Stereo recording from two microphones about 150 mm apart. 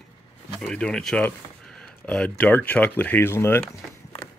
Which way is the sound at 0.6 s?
5° left (ahead or behind).